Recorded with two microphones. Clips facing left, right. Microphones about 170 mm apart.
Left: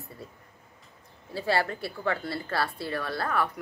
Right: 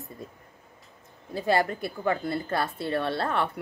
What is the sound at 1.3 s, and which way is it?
Speech, 15° right (ahead or behind).